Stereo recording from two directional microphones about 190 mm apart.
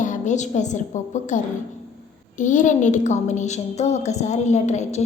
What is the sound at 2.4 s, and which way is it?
A woman's voice, 40° left (ahead or behind).